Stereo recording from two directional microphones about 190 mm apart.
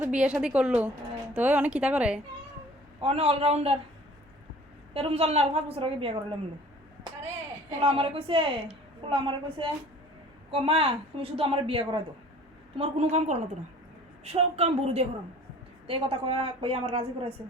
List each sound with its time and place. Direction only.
0.0 s a woman's voice: 5° right (ahead or behind)
3.0 s a woman's voice: 30° right (ahead or behind)
4.9 s a woman's voice: 30° right (ahead or behind)
7.8 s a woman's voice: 30° right (ahead or behind)